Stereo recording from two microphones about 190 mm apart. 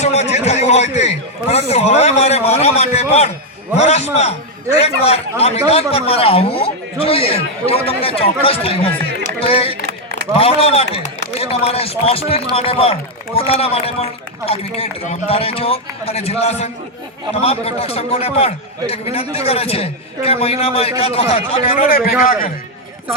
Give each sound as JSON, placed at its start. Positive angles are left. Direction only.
{"t": 0.0, "sound": "a man's voice", "side_deg": 35}
{"t": 22.2, "sound": "a man's voice", "side_deg": 45}